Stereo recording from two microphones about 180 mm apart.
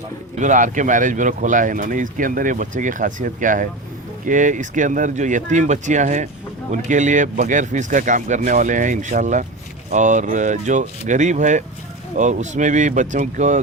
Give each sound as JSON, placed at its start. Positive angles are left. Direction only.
{"t": 0.3, "sound": "speech", "side_deg": -45}